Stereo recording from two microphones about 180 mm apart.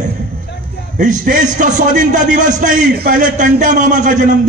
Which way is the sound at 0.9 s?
50° right (ahead or behind).